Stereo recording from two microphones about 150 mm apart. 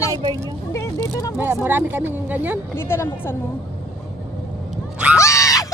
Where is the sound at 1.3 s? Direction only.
15° right (ahead or behind).